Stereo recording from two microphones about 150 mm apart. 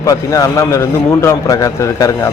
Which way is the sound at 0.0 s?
20° left (ahead or behind).